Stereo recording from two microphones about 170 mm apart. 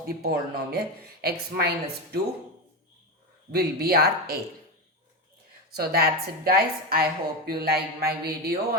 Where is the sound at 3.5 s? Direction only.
65° right (ahead or behind).